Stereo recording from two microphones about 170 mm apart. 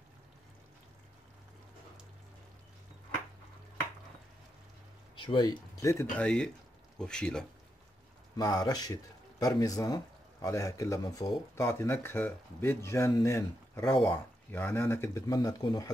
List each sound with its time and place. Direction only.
5.1 s speech: 30° left (ahead or behind)
6.1 s speech: 5° left (ahead or behind)
8.4 s speech: 20° left (ahead or behind)